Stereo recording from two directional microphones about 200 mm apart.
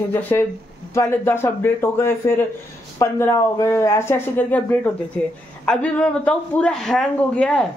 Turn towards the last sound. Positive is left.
turn(degrees=5)  # may be behind; listen again after turning